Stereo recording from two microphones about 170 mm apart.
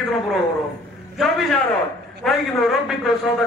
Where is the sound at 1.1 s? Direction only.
Centre (ahead or behind).